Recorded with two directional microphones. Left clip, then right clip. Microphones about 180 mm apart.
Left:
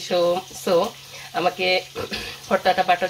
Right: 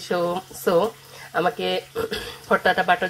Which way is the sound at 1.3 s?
20° right (ahead or behind).